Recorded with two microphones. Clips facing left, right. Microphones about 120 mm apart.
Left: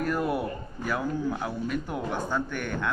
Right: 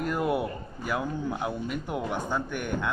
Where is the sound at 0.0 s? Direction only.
20° right (ahead or behind).